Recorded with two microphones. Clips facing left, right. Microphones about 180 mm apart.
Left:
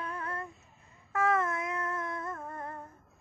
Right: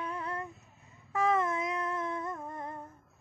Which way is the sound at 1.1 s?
15° right (ahead or behind).